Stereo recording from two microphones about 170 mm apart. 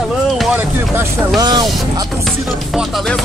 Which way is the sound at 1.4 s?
25° right (ahead or behind).